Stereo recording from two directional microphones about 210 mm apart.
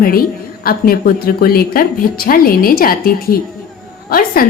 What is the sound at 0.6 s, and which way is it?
Speech, 45° left (ahead or behind).